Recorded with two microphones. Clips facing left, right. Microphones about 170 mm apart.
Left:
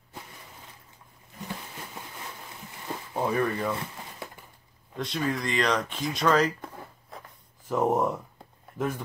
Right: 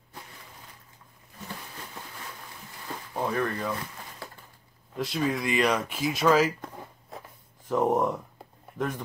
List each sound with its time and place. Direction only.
3.2 s speech: 5° left (ahead or behind)
4.2 s a sound: 20° left (ahead or behind)
4.9 s speech: 5° right (ahead or behind)